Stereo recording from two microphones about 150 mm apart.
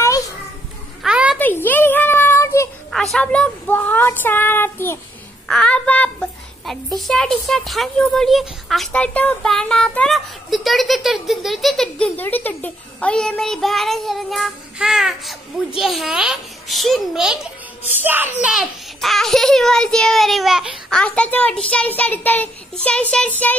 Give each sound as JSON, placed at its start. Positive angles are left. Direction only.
{"t": 1.0, "sound": "a sound", "side_deg": -5}
{"t": 1.4, "sound": "a sound", "side_deg": 15}
{"t": 2.9, "sound": "a woman's voice", "side_deg": 0}
{"t": 5.5, "sound": "child singing", "side_deg": 5}
{"t": 7.0, "sound": "speech", "side_deg": 0}
{"t": 21.0, "sound": "a woman's voice", "side_deg": 10}